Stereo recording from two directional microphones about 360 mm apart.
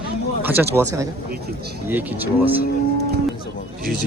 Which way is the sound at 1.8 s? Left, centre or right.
Centre.